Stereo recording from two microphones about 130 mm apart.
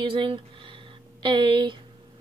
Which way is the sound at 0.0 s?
40° right (ahead or behind).